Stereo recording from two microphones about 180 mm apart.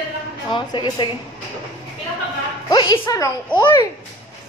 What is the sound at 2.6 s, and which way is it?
A child's voice, 20° left (ahead or behind).